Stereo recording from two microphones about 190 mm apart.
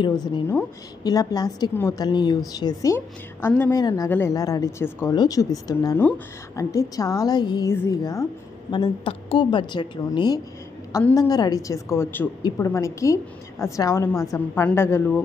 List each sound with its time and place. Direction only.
0.0 s a woman's voice: 20° left (ahead or behind)